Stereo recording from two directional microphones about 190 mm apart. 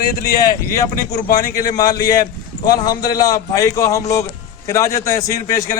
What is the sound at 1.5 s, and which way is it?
A man's voice, 20° left (ahead or behind).